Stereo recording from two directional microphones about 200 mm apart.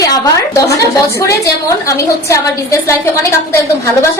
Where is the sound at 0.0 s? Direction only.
15° left (ahead or behind).